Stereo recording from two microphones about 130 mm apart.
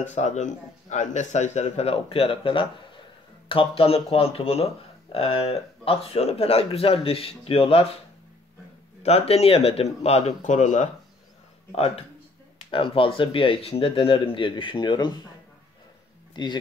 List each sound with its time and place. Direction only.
0.0 s a man's voice: 65° left (ahead or behind); by 7.8 s 50° left (ahead or behind)
9.0 s speech: 50° left (ahead or behind); by 10.9 s 70° left (ahead or behind)
11.7 s speech: 50° left (ahead or behind); by 15.2 s 35° left (ahead or behind)
16.4 s speech: 35° left (ahead or behind)